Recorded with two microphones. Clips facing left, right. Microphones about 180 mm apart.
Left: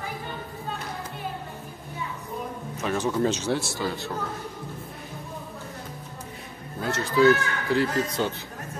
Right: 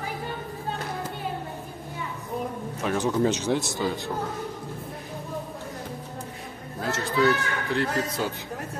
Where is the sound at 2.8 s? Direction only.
15° right (ahead or behind).